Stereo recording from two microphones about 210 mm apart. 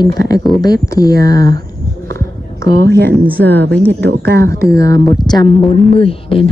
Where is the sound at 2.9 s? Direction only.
50° right (ahead or behind).